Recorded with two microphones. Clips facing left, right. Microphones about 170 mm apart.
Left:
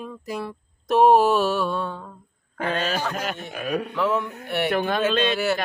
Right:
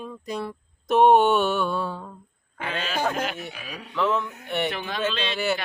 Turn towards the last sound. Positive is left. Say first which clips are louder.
# left 6 dB
turn(degrees=50)  # may be behind; listen again after turning